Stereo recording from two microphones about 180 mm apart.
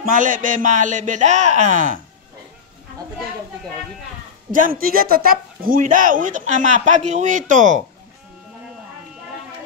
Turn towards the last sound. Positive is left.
turn(degrees=-45)  # may be behind; listen again after turning